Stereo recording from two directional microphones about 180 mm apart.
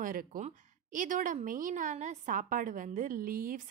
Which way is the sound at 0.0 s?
50° right (ahead or behind).